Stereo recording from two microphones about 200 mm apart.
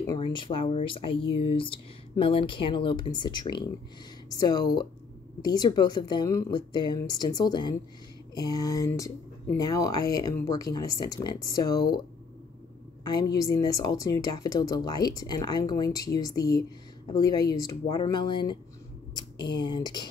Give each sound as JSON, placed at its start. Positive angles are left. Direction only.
{"t": 0.0, "sound": "speech", "side_deg": 20}
{"t": 13.0, "sound": "speech", "side_deg": 20}